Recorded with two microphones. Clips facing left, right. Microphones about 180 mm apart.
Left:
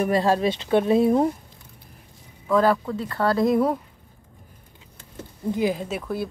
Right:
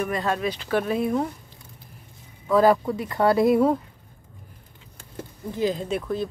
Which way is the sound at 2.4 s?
5° right (ahead or behind).